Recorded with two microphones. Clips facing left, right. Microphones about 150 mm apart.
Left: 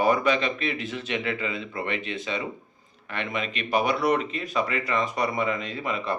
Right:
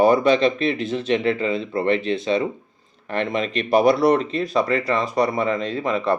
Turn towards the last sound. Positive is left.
turn(degrees=-35)  # may be behind; listen again after turning